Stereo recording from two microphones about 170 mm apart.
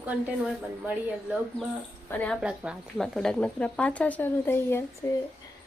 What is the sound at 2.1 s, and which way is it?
Speech, 10° left (ahead or behind).